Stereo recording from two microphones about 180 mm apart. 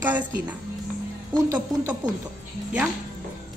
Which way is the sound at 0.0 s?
10° right (ahead or behind).